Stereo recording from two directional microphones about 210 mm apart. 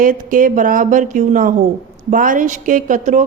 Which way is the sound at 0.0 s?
40° right (ahead or behind).